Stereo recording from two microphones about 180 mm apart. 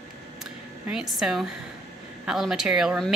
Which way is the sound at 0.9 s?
Centre (ahead or behind).